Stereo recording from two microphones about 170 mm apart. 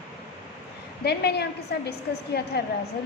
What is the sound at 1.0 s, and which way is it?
A woman's voice, 75° left (ahead or behind).